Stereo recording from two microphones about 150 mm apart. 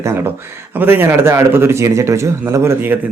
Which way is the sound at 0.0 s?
20° right (ahead or behind).